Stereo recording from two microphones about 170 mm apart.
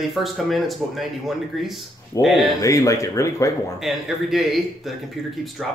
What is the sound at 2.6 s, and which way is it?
Speech, 20° left (ahead or behind).